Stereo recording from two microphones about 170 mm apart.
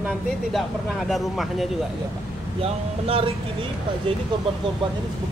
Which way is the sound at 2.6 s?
35° right (ahead or behind).